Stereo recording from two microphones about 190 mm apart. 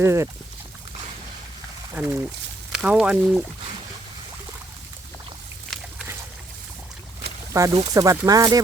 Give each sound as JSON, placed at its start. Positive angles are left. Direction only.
{"t": 0.0, "sound": "speech", "side_deg": -15}
{"t": 1.9, "sound": "speech", "side_deg": -10}
{"t": 5.7, "sound": "dog", "side_deg": 0}
{"t": 7.5, "sound": "speech", "side_deg": -15}